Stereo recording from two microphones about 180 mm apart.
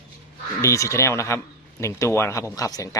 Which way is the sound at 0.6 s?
15° left (ahead or behind).